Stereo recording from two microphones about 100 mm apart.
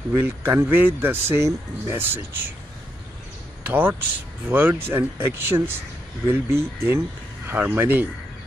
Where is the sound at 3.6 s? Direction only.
15° right (ahead or behind).